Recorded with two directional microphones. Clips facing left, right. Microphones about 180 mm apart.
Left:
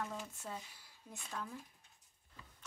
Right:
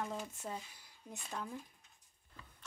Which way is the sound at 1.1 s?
20° right (ahead or behind).